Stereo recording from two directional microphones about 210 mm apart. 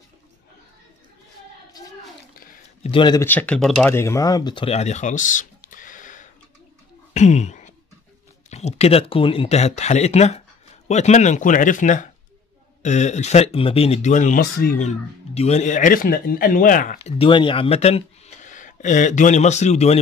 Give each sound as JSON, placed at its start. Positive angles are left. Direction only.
{"t": 2.8, "sound": "speech", "side_deg": 25}
{"t": 3.3, "sound": "speech", "side_deg": 5}